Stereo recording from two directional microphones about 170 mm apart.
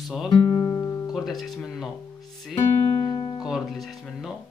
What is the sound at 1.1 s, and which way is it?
Speech, centre (ahead or behind).